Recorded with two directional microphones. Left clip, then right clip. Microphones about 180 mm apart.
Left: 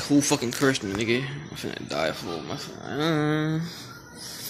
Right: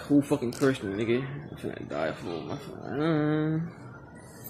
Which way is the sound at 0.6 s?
15° left (ahead or behind).